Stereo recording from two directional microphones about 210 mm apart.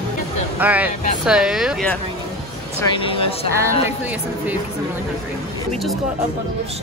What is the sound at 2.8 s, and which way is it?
Speech, 25° left (ahead or behind).